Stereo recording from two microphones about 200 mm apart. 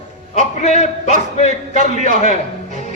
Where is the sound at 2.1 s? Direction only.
35° left (ahead or behind).